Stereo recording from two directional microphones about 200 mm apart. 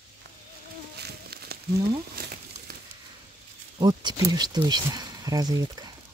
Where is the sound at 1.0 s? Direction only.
55° right (ahead or behind).